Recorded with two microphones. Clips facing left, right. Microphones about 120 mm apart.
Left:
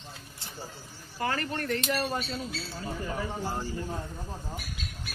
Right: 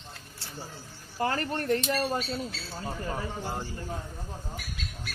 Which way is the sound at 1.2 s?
35° right (ahead or behind).